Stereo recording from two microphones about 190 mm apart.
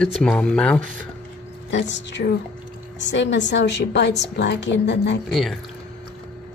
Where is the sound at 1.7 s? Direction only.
70° left (ahead or behind).